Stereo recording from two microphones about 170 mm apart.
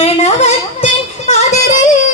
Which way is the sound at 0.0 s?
35° left (ahead or behind).